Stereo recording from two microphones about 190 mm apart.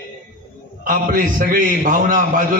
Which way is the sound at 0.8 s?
50° right (ahead or behind).